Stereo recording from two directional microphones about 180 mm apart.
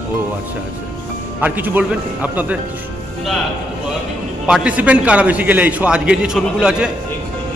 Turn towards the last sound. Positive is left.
turn(degrees=-5)  # may be behind; listen again after turning